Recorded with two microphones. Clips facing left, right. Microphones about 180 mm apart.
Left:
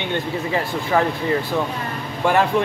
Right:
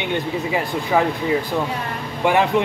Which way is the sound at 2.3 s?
15° right (ahead or behind).